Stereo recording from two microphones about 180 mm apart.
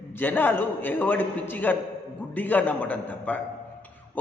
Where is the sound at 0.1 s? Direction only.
10° left (ahead or behind).